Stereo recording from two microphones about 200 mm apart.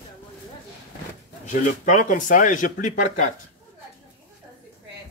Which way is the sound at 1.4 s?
40° left (ahead or behind).